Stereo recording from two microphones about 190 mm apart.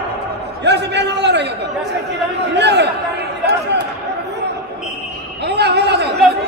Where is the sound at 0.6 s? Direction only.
65° right (ahead or behind).